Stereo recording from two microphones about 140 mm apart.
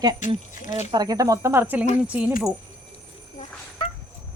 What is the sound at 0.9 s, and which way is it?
Speech, 25° right (ahead or behind).